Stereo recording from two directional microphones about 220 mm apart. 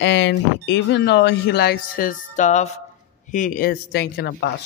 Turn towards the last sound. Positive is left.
turn(degrees=50)  # may be behind; listen again after turning